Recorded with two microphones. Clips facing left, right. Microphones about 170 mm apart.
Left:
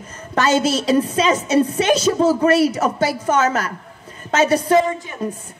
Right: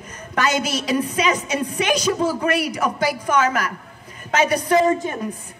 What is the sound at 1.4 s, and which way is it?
Speech, 15° right (ahead or behind).